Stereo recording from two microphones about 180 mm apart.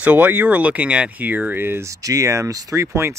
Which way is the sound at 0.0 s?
10° right (ahead or behind).